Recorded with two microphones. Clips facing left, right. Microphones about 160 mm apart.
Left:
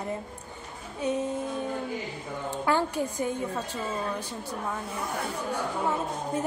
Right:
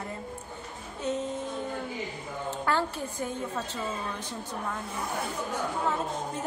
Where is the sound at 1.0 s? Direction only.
10° left (ahead or behind).